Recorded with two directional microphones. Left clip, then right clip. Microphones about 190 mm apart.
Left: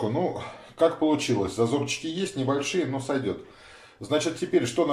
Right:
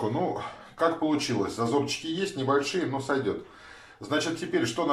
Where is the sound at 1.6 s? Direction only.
20° left (ahead or behind).